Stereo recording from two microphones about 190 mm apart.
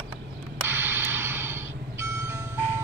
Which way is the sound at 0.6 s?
10° right (ahead or behind).